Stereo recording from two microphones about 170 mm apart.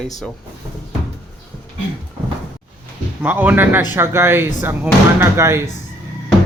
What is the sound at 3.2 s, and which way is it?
Speech, 10° right (ahead or behind).